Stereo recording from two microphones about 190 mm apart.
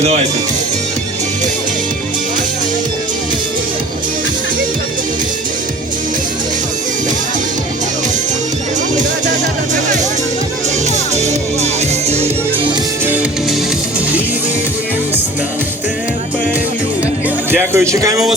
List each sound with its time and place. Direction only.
11.2 s music: 35° right (ahead or behind)
17.5 s speech: 10° right (ahead or behind)